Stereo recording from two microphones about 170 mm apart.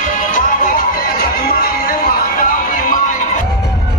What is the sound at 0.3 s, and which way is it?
Music, 55° left (ahead or behind).